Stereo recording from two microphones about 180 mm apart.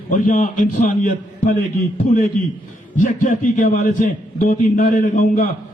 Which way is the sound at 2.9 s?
50° left (ahead or behind).